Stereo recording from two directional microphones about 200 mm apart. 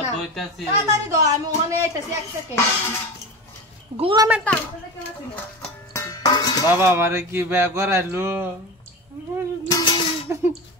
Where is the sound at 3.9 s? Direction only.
25° right (ahead or behind).